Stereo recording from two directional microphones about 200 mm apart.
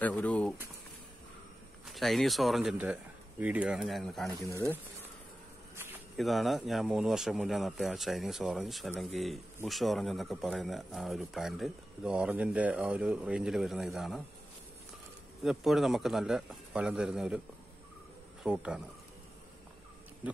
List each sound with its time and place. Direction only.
0.0 s speech: 5° left (ahead or behind)
1.9 s speech: centre (ahead or behind)
6.1 s speech: centre (ahead or behind)
15.4 s speech: centre (ahead or behind)
18.4 s a man's voice: 5° right (ahead or behind)